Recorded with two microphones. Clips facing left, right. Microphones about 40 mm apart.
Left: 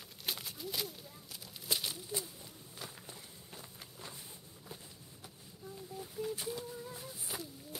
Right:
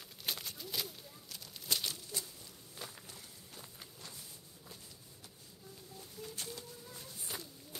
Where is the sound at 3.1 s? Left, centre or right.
Centre.